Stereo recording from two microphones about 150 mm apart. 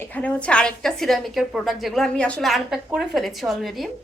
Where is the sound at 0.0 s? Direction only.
10° left (ahead or behind).